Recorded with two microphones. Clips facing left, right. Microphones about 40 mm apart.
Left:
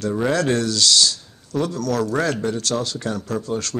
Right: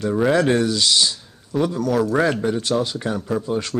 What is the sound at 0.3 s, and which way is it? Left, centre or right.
Speech, centre.